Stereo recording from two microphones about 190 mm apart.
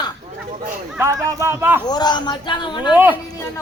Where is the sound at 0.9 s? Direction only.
15° right (ahead or behind).